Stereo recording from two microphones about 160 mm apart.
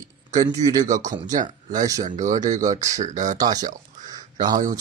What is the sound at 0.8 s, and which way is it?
Speech, 55° right (ahead or behind).